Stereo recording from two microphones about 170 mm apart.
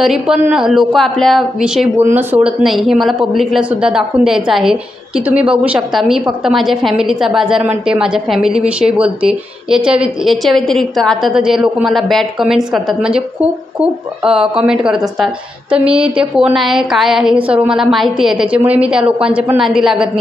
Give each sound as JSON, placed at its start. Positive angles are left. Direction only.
{"t": 0.0, "sound": "a woman's voice", "side_deg": -5}